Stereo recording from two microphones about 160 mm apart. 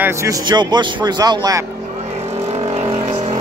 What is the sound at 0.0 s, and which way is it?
Speech, 15° right (ahead or behind).